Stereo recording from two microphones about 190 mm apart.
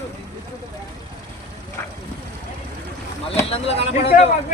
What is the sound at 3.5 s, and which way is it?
Speech, 30° left (ahead or behind).